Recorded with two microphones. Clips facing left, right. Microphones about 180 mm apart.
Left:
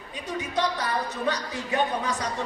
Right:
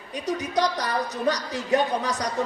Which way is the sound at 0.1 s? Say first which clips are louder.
Right 4 dB; 40° right (ahead or behind).